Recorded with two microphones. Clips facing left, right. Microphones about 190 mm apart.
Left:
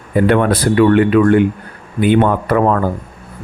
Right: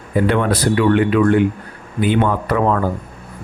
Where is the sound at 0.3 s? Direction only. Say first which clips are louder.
Left 4 dB; 55° left (ahead or behind).